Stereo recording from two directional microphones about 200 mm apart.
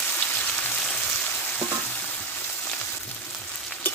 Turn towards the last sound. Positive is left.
turn(degrees=5)  # may be behind; listen again after turning